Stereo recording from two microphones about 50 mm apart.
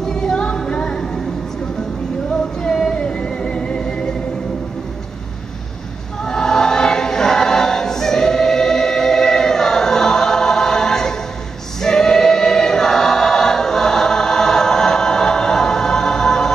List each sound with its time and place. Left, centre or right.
0.0 s music: centre
2.6 s music: centre
6.2 s choir: centre